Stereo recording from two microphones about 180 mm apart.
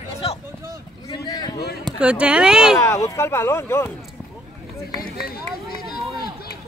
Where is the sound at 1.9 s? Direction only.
5° right (ahead or behind).